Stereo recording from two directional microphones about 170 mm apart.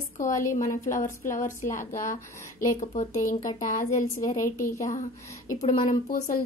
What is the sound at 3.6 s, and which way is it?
A woman's voice, 50° left (ahead or behind).